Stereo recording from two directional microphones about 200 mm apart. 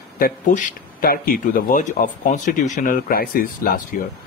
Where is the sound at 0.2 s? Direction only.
40° left (ahead or behind).